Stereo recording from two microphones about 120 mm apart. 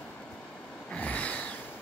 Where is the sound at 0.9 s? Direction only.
10° left (ahead or behind).